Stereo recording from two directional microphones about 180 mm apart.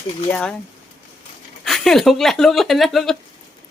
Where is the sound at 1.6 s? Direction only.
Centre (ahead or behind).